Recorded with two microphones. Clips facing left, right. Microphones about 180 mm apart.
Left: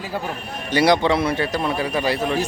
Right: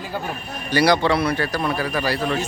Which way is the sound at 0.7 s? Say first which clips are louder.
Left 1 dB; 20° left (ahead or behind).